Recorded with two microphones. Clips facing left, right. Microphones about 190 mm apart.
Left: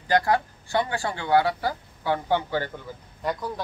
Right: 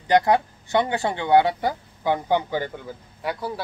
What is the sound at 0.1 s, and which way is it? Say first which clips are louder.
Speech: right 4 dB; 20° right (ahead or behind).